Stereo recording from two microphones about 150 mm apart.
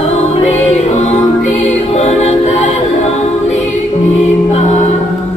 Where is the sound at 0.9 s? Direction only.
50° left (ahead or behind).